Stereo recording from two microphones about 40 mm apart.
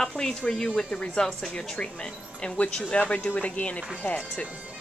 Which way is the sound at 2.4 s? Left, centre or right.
Left.